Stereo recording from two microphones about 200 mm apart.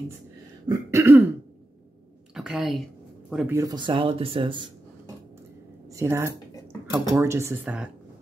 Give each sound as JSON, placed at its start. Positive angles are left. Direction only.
{"t": 0.7, "sound": "speech", "side_deg": -15}
{"t": 2.3, "sound": "a sound", "side_deg": 0}
{"t": 3.3, "sound": "speech", "side_deg": -5}
{"t": 3.5, "sound": "speech", "side_deg": -20}
{"t": 5.9, "sound": "speech", "side_deg": -10}